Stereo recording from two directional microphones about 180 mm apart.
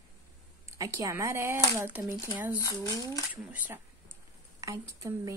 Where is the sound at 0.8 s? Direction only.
15° right (ahead or behind).